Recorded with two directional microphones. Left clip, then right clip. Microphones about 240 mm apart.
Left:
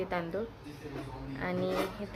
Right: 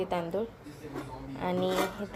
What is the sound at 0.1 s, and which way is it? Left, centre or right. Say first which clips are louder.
A woman's voice: right 3 dB; centre.